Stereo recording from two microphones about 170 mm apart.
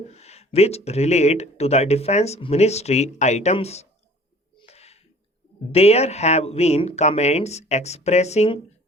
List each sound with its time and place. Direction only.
0.1 s speech: 40° left (ahead or behind)
4.5 s a sound: 35° left (ahead or behind)
5.7 s speech: 40° left (ahead or behind)